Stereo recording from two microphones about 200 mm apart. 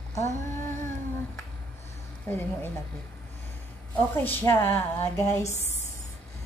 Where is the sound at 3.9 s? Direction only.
10° left (ahead or behind).